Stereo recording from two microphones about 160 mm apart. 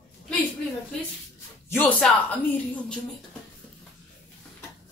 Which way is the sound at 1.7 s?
10° left (ahead or behind).